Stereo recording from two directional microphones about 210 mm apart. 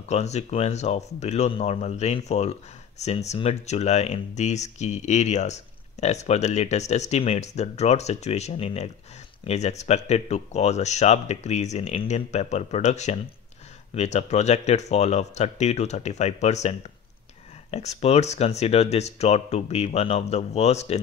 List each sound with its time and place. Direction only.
0.1 s speech: 30° left (ahead or behind)